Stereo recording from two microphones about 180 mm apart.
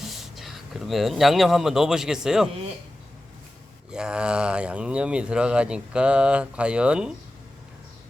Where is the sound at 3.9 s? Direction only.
5° right (ahead or behind).